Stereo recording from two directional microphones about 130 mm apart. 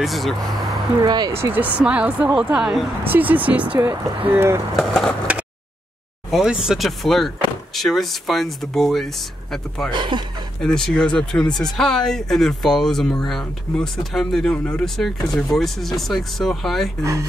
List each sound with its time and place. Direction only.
0.0 s speech: centre (ahead or behind)
1.0 s speech: 35° right (ahead or behind)
1.3 s speech: 15° right (ahead or behind)
4.7 s speech: 5° left (ahead or behind)
6.3 s speech: 5° right (ahead or behind)
9.8 s speech: 35° right (ahead or behind)
10.6 s speech: 5° left (ahead or behind)
17.0 s speech: 25° right (ahead or behind)